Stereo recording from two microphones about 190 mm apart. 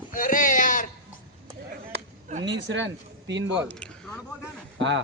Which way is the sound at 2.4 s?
70° right (ahead or behind).